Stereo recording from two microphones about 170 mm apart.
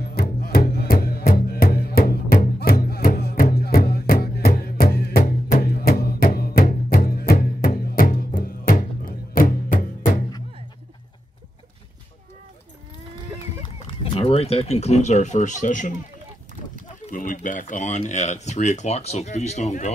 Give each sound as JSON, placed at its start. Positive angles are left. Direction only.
{"t": 0.0, "sound": "music", "side_deg": 65}
{"t": 5.2, "sound": "music", "side_deg": 55}
{"t": 13.4, "sound": "a sound", "side_deg": 35}
{"t": 17.1, "sound": "speech", "side_deg": 50}